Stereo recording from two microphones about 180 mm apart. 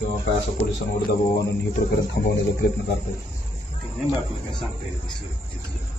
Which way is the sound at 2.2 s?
55° left (ahead or behind).